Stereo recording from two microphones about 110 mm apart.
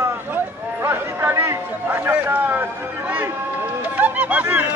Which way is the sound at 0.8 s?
25° right (ahead or behind).